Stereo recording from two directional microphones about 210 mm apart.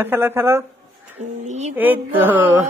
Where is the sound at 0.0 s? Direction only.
10° right (ahead or behind).